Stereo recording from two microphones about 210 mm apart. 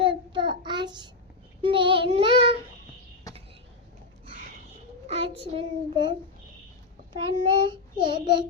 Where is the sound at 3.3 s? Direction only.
15° left (ahead or behind).